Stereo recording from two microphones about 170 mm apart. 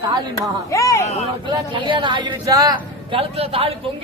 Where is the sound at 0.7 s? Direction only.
20° left (ahead or behind).